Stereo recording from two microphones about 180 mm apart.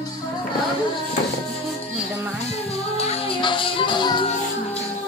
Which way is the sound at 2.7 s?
35° left (ahead or behind).